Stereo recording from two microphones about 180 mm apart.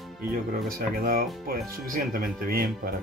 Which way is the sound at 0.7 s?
55° right (ahead or behind).